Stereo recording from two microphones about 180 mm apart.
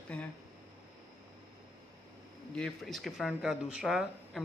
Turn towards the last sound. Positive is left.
turn(degrees=0)  # may be behind; listen again after turning